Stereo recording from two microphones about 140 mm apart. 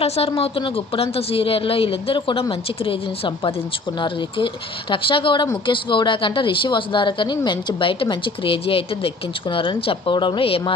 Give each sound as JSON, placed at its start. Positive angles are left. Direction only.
{"t": 0.0, "sound": "speech", "side_deg": 45}